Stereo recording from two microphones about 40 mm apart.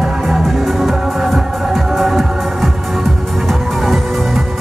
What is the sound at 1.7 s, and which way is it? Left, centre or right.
Music, centre.